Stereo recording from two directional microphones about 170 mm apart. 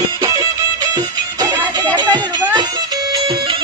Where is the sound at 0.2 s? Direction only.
20° right (ahead or behind).